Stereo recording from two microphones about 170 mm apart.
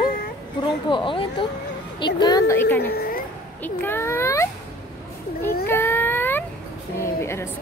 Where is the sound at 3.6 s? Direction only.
10° left (ahead or behind).